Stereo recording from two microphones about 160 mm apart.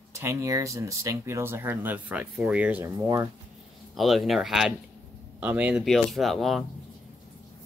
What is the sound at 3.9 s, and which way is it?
Speech, centre (ahead or behind).